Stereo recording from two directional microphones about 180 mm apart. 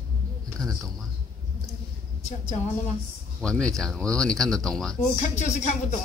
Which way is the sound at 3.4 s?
5° left (ahead or behind).